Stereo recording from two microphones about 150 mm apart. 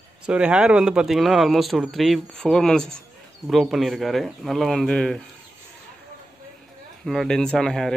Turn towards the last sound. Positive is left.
turn(degrees=5)  # may be behind; listen again after turning